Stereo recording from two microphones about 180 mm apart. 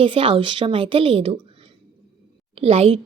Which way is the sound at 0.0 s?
30° right (ahead or behind).